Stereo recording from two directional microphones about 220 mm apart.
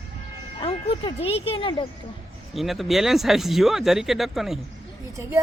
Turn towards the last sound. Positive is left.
turn(degrees=-15)  # may be behind; listen again after turning